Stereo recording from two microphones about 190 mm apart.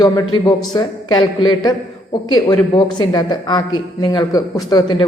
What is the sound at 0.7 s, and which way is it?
A woman's voice, 25° left (ahead or behind).